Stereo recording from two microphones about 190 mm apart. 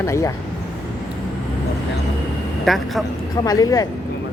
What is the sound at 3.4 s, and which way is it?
Speech, 20° left (ahead or behind).